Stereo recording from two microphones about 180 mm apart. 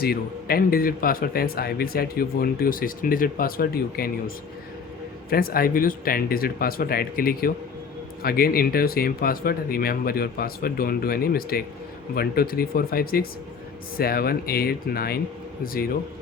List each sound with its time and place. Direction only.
0.0 s a man's voice: 55° left (ahead or behind)
5.3 s a man's voice: 55° left (ahead or behind)